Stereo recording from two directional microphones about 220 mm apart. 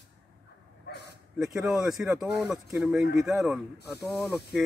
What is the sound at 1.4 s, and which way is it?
Speech, centre (ahead or behind).